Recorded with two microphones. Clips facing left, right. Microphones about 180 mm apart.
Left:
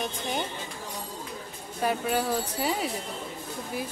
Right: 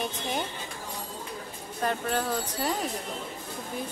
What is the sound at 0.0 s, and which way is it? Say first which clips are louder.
Speech: even; centre (ahead or behind).